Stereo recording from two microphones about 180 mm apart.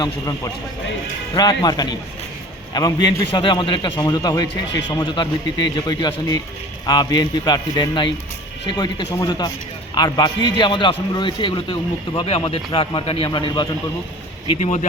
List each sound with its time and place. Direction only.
0.0 s a man's voice: 20° left (ahead or behind)
14.4 s speech: 40° left (ahead or behind)